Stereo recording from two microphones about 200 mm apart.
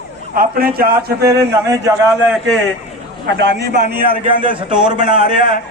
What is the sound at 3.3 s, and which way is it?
Speech, 55° right (ahead or behind).